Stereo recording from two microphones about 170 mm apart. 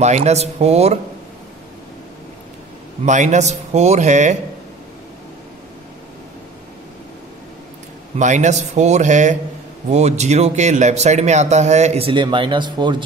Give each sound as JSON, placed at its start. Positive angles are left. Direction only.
{"t": 0.0, "sound": "speech", "side_deg": -40}
{"t": 3.1, "sound": "a man's voice", "side_deg": -45}
{"t": 8.2, "sound": "a man's voice", "side_deg": -45}